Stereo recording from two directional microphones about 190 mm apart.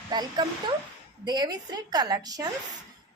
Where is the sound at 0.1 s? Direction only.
25° right (ahead or behind).